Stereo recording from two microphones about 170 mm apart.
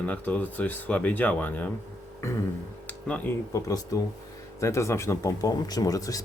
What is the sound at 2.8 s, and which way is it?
Speech, 10° left (ahead or behind).